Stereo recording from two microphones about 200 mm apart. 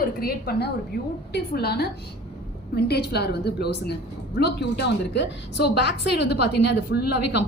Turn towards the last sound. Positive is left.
turn(degrees=55)  # may be behind; listen again after turning